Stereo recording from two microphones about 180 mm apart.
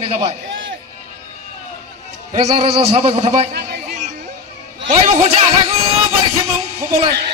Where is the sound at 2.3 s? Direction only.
35° right (ahead or behind).